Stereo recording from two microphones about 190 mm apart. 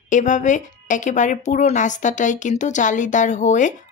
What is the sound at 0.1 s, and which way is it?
A woman's voice, 40° left (ahead or behind).